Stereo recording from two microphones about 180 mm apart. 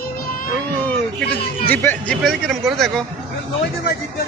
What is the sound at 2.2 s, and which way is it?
Speech, centre (ahead or behind).